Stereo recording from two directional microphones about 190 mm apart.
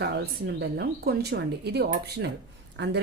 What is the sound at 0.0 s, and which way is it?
Speech, 55° right (ahead or behind).